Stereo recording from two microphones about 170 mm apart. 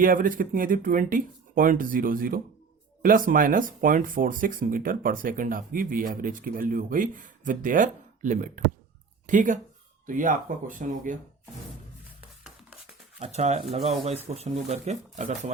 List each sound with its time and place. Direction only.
0.0 s speech: 55° right (ahead or behind)
13.1 s speech: 40° right (ahead or behind)